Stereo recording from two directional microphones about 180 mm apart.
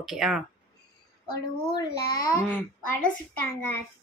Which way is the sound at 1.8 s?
60° left (ahead or behind).